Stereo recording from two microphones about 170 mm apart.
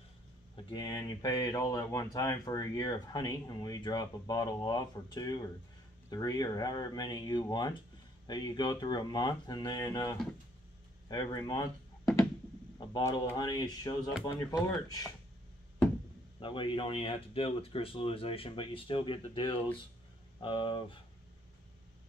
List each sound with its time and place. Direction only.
0.7 s speech: 25° left (ahead or behind)
16.3 s speech: 30° left (ahead or behind)